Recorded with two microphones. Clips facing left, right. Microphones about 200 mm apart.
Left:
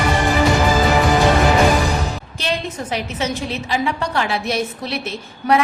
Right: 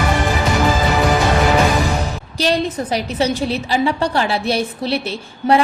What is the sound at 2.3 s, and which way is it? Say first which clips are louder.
A woman's voice: right 7 dB; 35° right (ahead or behind).